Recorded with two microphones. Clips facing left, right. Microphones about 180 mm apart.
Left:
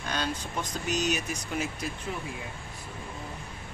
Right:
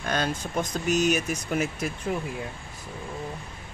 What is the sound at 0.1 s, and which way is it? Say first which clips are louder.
Speech: right 5 dB; 50° right (ahead or behind).